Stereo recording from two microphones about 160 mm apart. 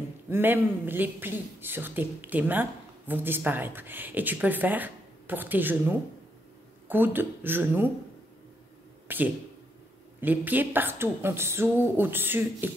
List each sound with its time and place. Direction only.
0.3 s speech: 10° right (ahead or behind)
9.0 s a sound: 10° right (ahead or behind)
10.2 s speech: 10° right (ahead or behind)